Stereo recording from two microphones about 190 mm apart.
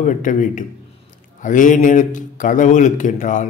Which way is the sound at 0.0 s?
40° left (ahead or behind).